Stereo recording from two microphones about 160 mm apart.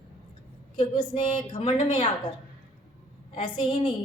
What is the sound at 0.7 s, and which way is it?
A woman's voice, 35° left (ahead or behind).